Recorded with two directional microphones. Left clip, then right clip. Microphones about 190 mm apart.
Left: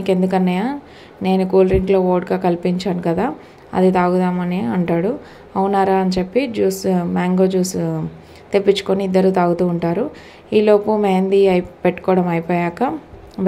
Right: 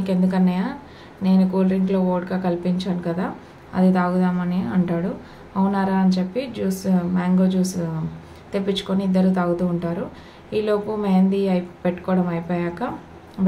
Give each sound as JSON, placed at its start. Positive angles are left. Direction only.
{"t": 0.0, "sound": "a woman's voice", "side_deg": 35}